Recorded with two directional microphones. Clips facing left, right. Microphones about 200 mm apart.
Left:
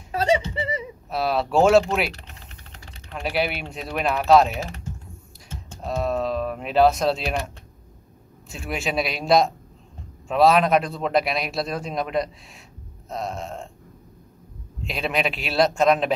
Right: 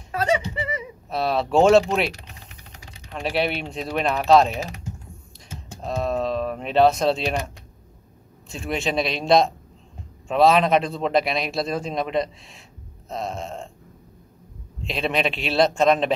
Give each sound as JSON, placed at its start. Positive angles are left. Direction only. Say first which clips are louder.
{"t": 0.1, "sound": "a sound", "louder": "left 1 dB", "side_deg": 30}
{"t": 1.1, "sound": "speech", "louder": "right 1 dB", "side_deg": 0}
{"t": 2.7, "sound": "typing", "louder": "even", "side_deg": -15}
{"t": 3.2, "sound": "speech", "louder": "right 1 dB", "side_deg": 5}
{"t": 4.6, "sound": "speech", "louder": "right 1 dB", "side_deg": -15}
{"t": 5.9, "sound": "speech", "louder": "even", "side_deg": 0}
{"t": 8.5, "sound": "speech", "louder": "right 2 dB", "side_deg": 5}
{"t": 13.1, "sound": "burping", "louder": "even", "side_deg": 0}
{"t": 14.8, "sound": "speech", "louder": "right 1 dB", "side_deg": 0}